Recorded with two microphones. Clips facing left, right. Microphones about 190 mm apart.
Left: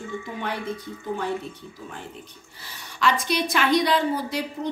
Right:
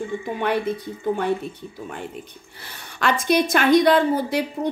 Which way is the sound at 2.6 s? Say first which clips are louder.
Even; 55° right (ahead or behind).